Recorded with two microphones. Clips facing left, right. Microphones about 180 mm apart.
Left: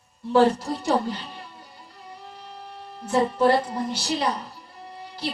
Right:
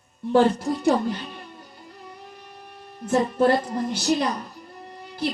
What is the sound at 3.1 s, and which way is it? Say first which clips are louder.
Speech: even; 55° right (ahead or behind).